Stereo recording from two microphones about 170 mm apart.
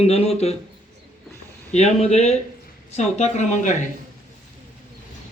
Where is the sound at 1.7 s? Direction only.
40° left (ahead or behind).